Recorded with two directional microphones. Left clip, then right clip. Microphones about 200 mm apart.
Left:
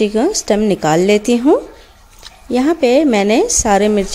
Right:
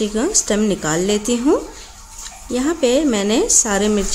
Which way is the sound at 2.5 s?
30° left (ahead or behind).